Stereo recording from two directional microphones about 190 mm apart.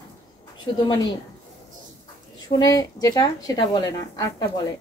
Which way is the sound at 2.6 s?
20° left (ahead or behind).